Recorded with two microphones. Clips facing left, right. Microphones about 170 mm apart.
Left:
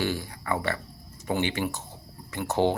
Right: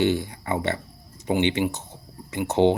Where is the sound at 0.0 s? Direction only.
25° right (ahead or behind).